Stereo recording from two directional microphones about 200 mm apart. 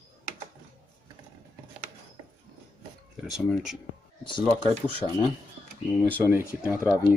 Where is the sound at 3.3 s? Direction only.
Centre (ahead or behind).